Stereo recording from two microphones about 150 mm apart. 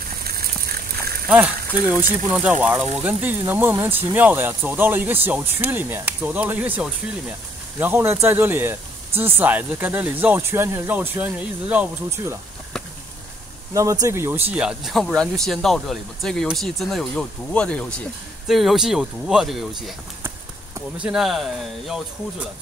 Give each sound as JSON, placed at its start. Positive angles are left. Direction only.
{"t": 0.2, "sound": "a sound", "side_deg": -90}
{"t": 1.3, "sound": "speech", "side_deg": -10}
{"t": 14.0, "sound": "speech", "side_deg": -15}
{"t": 14.5, "sound": "speech", "side_deg": -5}
{"t": 21.0, "sound": "speech", "side_deg": -5}